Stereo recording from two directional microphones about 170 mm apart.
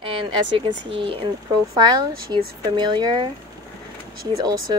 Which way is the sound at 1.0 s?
30° right (ahead or behind).